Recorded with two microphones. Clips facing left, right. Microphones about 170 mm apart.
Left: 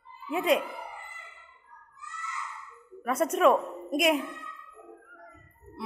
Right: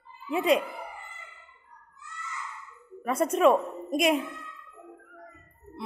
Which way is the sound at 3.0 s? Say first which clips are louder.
Right 1 dB; centre (ahead or behind).